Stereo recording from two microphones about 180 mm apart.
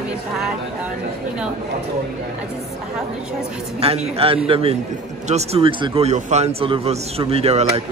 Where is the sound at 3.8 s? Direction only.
35° right (ahead or behind).